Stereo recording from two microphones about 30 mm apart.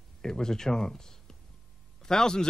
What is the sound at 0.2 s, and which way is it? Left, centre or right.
Speech, left.